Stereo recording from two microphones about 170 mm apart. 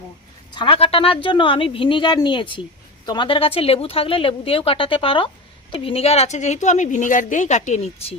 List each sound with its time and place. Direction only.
0.5 s speech: 30° left (ahead or behind)